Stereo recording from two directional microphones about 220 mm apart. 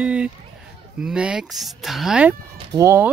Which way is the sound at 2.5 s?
15° right (ahead or behind).